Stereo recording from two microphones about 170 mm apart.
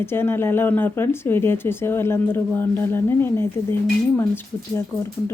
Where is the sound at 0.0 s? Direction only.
15° left (ahead or behind).